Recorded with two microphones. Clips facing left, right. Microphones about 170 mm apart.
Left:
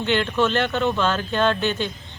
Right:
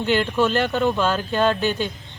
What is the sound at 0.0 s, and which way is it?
Speech, 5° right (ahead or behind).